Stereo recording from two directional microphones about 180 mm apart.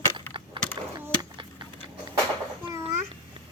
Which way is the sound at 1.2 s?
25° right (ahead or behind).